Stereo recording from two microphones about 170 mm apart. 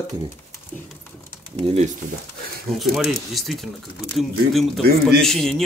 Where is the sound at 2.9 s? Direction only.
Centre (ahead or behind).